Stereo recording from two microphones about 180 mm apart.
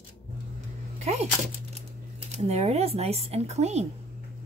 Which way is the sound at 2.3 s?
35° right (ahead or behind).